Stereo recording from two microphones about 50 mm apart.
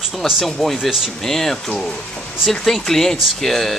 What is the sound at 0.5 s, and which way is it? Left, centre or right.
Speech, centre.